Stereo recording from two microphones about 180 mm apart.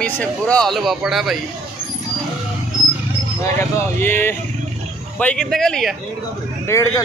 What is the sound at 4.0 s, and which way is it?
Speech, 10° left (ahead or behind).